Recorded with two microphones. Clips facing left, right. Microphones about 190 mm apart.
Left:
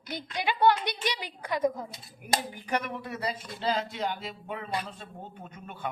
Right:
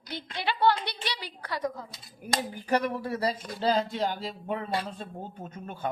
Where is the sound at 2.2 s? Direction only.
40° right (ahead or behind).